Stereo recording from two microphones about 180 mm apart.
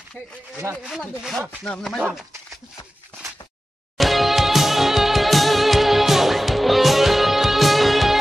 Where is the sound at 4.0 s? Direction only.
Centre (ahead or behind).